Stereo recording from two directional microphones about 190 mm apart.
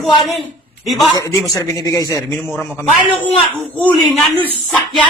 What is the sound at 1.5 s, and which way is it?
Speech, 15° left (ahead or behind).